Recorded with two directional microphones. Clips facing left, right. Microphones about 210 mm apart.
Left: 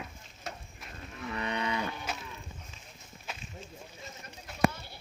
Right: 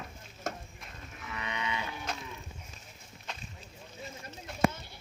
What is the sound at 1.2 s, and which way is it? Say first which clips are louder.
Livestock: left 4 dB; 35° left (ahead or behind).